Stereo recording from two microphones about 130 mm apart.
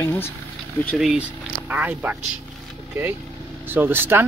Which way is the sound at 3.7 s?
15° right (ahead or behind).